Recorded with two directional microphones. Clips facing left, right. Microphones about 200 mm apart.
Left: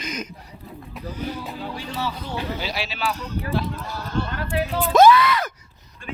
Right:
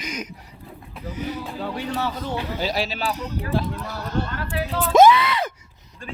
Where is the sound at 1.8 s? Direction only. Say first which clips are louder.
Right 4 dB; 50° right (ahead or behind).